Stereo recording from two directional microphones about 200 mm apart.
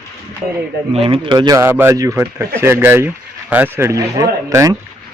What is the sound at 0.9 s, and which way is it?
A man's voice, 30° right (ahead or behind).